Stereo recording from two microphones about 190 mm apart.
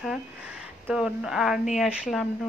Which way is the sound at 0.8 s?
5° right (ahead or behind).